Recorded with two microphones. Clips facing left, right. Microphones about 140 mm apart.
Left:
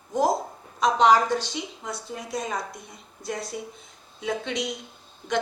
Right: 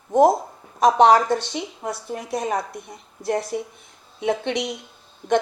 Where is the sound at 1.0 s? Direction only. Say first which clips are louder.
Right 2 dB; 60° right (ahead or behind).